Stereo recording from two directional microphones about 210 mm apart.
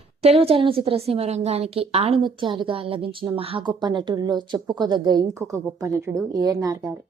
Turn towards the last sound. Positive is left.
turn(degrees=-15)  # may be behind; listen again after turning